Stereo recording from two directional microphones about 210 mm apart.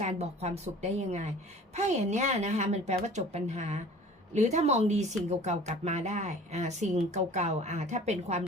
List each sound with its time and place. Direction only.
0.0 s speech: 30° right (ahead or behind)